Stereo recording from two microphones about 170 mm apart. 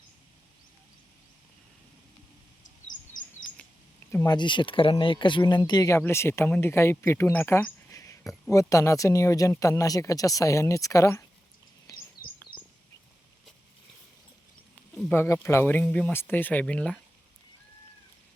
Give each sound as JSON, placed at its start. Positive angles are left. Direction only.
{"t": 3.1, "sound": "chirp", "side_deg": 50}
{"t": 4.1, "sound": "speech", "side_deg": 15}
{"t": 4.4, "sound": "speech", "side_deg": 30}
{"t": 15.1, "sound": "speech", "side_deg": 15}